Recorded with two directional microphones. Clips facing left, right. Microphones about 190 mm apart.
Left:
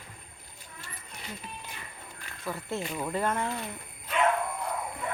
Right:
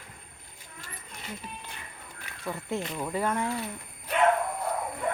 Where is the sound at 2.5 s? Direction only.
20° right (ahead or behind).